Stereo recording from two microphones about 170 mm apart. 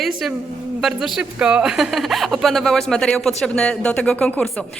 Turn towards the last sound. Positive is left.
turn(degrees=5)  # may be behind; listen again after turning